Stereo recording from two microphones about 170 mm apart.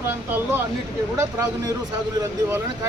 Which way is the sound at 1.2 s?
20° right (ahead or behind).